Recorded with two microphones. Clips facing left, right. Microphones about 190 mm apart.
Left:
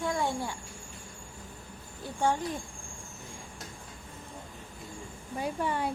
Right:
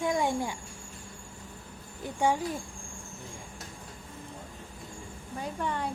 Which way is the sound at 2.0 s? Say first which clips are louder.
Right 1 dB; 10° right (ahead or behind).